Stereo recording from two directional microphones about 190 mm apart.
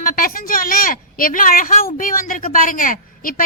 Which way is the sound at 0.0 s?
50° left (ahead or behind).